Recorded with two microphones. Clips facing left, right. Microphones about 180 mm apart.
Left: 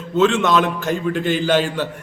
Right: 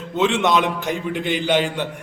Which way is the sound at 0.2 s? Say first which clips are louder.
Left 2 dB; 15° right (ahead or behind).